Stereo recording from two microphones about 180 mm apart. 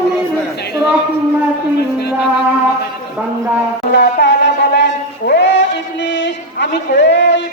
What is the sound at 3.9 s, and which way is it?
Music, 70° left (ahead or behind).